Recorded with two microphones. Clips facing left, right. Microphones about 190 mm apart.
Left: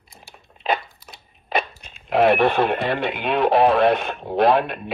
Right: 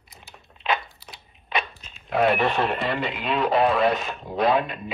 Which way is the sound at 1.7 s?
65° left (ahead or behind).